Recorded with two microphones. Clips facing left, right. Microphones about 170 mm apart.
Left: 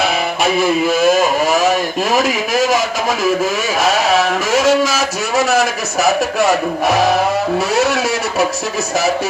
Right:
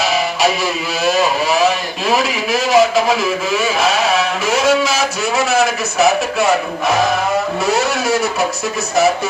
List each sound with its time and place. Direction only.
0.6 s speech: 50° left (ahead or behind)